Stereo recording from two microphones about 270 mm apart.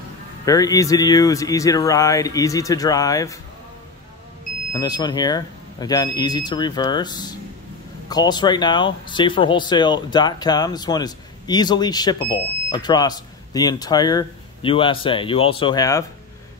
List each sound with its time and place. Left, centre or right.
0.5 s speech: centre
4.7 s speech: centre